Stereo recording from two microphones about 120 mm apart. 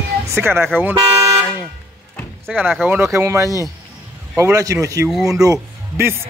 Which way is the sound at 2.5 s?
10° right (ahead or behind).